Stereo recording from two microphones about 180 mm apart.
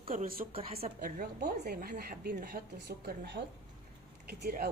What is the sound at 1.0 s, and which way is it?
Speech, 50° right (ahead or behind).